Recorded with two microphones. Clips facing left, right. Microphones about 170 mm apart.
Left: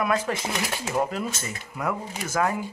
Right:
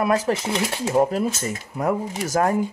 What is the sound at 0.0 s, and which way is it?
Speech, 35° right (ahead or behind).